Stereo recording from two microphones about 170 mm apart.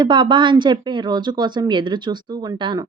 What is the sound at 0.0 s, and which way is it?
Speech, 25° right (ahead or behind).